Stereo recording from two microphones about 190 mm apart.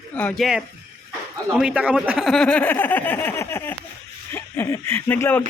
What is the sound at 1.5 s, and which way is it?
Speech, 5° right (ahead or behind).